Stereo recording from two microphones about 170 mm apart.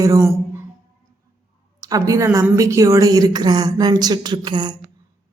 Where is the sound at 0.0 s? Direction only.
20° right (ahead or behind).